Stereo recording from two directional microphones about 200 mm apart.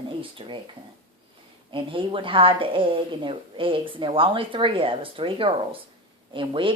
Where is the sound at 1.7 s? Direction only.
25° right (ahead or behind).